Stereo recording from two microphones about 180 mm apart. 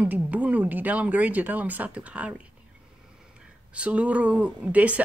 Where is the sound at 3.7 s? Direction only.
5° right (ahead or behind).